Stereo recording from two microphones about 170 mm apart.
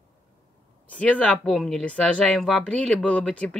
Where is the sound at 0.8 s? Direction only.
10° left (ahead or behind).